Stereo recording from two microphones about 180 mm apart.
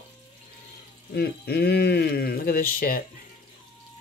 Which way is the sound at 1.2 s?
60° left (ahead or behind).